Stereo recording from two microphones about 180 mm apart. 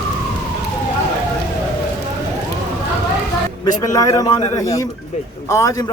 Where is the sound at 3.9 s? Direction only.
20° left (ahead or behind).